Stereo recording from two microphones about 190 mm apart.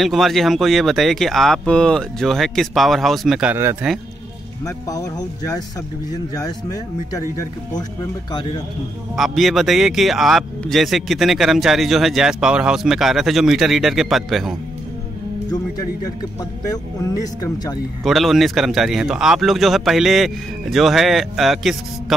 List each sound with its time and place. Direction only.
0.0 s speech: centre (ahead or behind)
4.6 s speech: 20° left (ahead or behind)
7.7 s speech: 20° left (ahead or behind)
9.1 s speech: centre (ahead or behind)
18.0 s speech: centre (ahead or behind)